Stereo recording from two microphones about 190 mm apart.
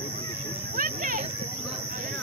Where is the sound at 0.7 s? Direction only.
45° right (ahead or behind).